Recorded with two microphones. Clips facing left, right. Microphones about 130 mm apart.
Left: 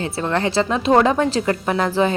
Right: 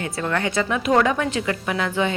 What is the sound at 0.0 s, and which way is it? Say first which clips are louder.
A woman's voice: left 3 dB; 30° left (ahead or behind).